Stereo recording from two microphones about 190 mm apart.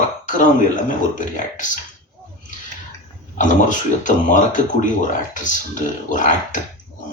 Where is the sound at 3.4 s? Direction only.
40° left (ahead or behind).